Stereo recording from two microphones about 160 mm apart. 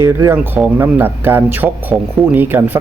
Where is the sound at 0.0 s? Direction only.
15° right (ahead or behind).